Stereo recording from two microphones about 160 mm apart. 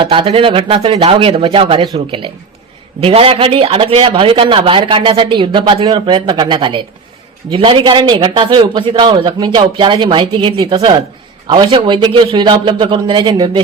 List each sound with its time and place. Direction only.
0.0 s a man's voice: 30° right (ahead or behind)